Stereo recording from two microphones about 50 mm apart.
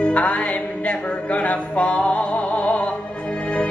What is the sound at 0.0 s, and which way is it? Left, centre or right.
Music, left.